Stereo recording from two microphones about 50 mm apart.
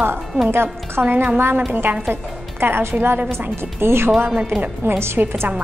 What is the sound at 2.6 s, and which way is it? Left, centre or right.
A woman's voice, right.